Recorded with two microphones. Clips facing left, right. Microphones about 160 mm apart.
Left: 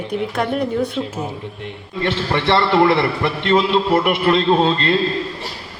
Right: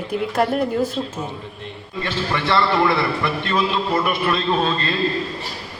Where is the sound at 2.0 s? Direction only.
25° left (ahead or behind).